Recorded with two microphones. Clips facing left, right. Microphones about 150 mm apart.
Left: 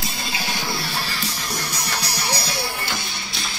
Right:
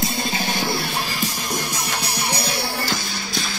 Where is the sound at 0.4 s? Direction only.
50° right (ahead or behind).